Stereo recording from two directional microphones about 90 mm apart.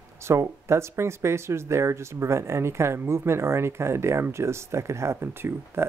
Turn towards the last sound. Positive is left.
turn(degrees=-25)  # may be behind; listen again after turning